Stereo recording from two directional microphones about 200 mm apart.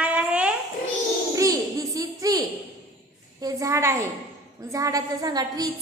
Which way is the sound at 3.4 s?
15° right (ahead or behind).